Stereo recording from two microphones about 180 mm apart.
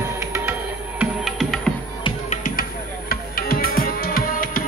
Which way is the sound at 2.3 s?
50° left (ahead or behind).